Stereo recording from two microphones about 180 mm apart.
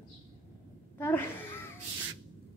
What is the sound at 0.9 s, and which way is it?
Speech, 10° left (ahead or behind).